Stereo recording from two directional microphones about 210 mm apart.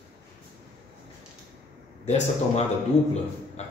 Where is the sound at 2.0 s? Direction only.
35° left (ahead or behind).